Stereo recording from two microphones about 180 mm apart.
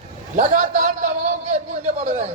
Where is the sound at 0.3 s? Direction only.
40° right (ahead or behind).